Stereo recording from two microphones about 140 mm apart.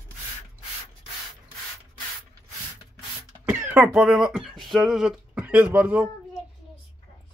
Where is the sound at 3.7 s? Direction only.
10° right (ahead or behind).